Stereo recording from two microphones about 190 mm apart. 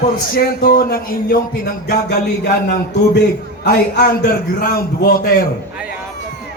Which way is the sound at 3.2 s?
60° left (ahead or behind).